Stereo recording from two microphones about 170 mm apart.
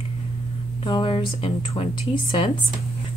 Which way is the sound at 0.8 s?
30° left (ahead or behind).